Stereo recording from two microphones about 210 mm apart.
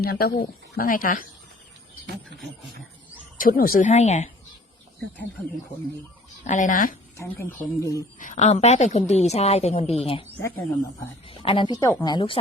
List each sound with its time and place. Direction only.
0.0 s a woman's voice: 45° left (ahead or behind)
3.3 s a woman's voice: 40° left (ahead or behind)
6.4 s a woman's voice: 35° left (ahead or behind)
7.2 s a woman's voice: 15° left (ahead or behind)
8.2 s a woman's voice: 35° left (ahead or behind)
11.3 s a woman's voice: 25° left (ahead or behind)